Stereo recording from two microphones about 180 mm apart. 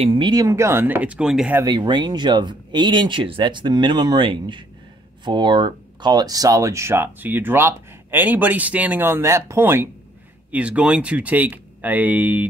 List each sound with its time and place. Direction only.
0.0 s speech: 30° right (ahead or behind); by 1.6 s 5° right (ahead or behind)
1.6 s speech: 25° right (ahead or behind)